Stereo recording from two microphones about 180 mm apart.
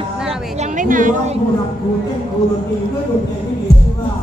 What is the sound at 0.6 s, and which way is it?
Speech, 45° right (ahead or behind).